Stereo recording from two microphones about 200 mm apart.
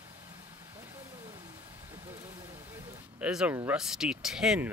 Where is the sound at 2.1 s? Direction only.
10° right (ahead or behind).